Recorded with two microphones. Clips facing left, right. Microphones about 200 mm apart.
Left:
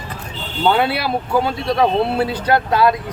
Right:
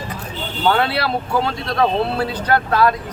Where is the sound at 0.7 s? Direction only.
10° left (ahead or behind).